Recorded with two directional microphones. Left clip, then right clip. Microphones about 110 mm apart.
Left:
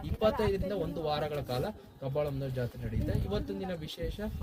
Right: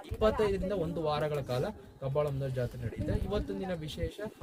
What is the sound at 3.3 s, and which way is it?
Speech, 30° right (ahead or behind).